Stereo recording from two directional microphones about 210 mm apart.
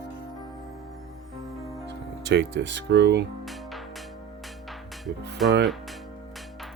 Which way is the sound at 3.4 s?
Centre (ahead or behind).